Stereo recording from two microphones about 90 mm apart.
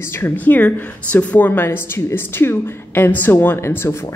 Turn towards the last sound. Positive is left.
turn(degrees=30)  # may be behind; listen again after turning